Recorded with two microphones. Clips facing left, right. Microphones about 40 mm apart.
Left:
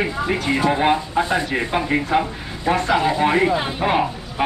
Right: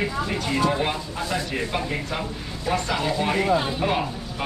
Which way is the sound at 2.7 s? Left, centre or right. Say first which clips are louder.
Left 6 dB; centre.